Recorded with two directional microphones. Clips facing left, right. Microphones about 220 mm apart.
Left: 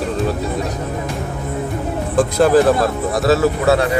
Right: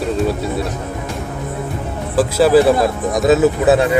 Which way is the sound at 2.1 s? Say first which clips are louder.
Right 1 dB; 5° right (ahead or behind).